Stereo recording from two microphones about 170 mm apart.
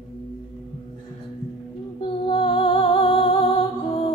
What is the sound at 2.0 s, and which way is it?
Music, 30° left (ahead or behind).